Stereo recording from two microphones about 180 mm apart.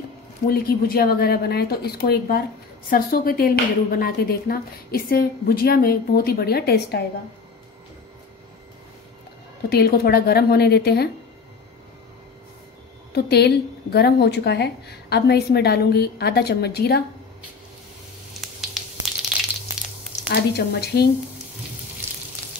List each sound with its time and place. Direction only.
0.5 s speech: 55° left (ahead or behind)
9.7 s speech: 60° left (ahead or behind)
13.1 s speech: 65° left (ahead or behind)
20.2 s speech: 65° left (ahead or behind)